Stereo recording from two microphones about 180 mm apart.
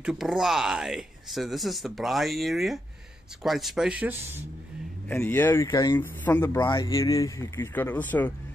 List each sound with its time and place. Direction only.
0.0 s speech: 5° right (ahead or behind)
5.0 s speech: 10° left (ahead or behind)